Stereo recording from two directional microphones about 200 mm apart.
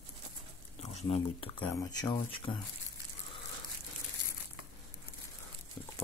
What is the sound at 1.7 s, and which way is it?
Speech, 15° left (ahead or behind).